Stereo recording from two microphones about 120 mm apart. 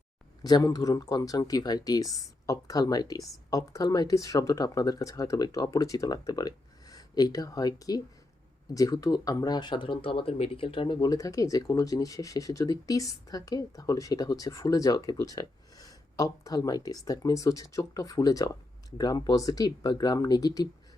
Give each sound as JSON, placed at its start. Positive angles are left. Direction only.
{"t": 0.4, "sound": "speech", "side_deg": 35}